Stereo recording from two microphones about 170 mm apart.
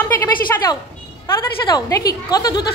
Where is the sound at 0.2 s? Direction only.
20° left (ahead or behind).